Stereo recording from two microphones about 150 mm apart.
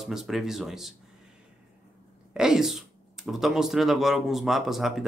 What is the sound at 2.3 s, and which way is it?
Speech, 5° right (ahead or behind).